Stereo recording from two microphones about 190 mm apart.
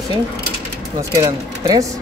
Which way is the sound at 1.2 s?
20° right (ahead or behind).